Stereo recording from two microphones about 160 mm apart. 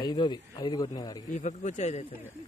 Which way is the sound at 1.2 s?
50° left (ahead or behind).